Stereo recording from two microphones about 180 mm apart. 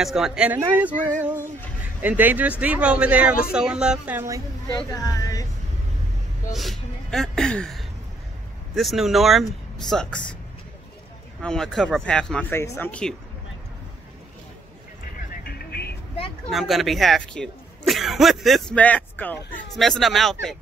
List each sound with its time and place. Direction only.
0.0 s speech: centre (ahead or behind)
4.7 s a woman's voice: 20° left (ahead or behind)
6.5 s speech: centre (ahead or behind)
11.4 s speech: 5° left (ahead or behind)
15.4 s music: 60° left (ahead or behind)
16.4 s speech: centre (ahead or behind)